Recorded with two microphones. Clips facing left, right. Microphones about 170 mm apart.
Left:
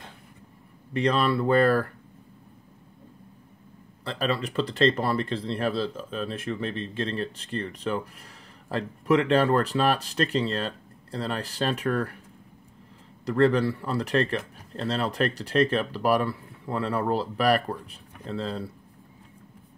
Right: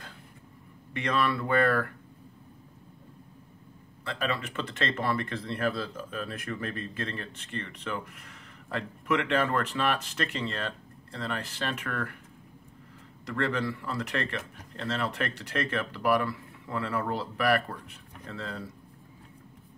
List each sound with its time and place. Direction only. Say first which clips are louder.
0.9 s speech: left 5 dB; 35° left (ahead or behind)
4.0 s speech: left 4 dB; 35° left (ahead or behind)
13.2 s speech: left 8 dB; 35° left (ahead or behind)